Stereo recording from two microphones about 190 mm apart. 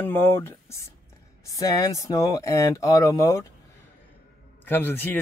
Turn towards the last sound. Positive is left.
turn(degrees=10)  # may be behind; listen again after turning